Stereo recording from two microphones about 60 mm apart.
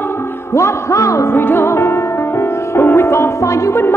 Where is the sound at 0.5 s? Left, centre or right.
Left.